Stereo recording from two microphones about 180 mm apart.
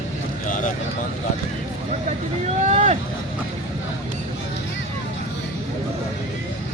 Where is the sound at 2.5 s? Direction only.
40° right (ahead or behind).